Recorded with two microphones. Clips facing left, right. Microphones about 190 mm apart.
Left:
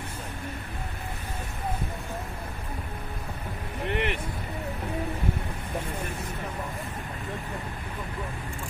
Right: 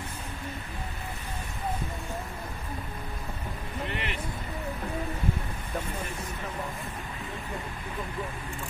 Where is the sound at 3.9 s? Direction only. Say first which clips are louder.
Left 11 dB; 60° left (ahead or behind).